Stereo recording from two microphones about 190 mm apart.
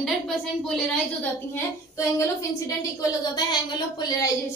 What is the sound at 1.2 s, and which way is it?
A woman's voice, 15° left (ahead or behind).